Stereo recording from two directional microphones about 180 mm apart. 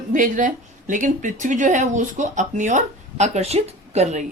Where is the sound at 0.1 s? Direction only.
45° right (ahead or behind).